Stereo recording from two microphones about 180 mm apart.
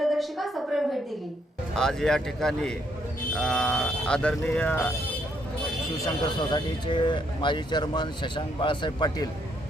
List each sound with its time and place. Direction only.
0.0 s a woman's voice: centre (ahead or behind)
6.0 s speech: 25° left (ahead or behind)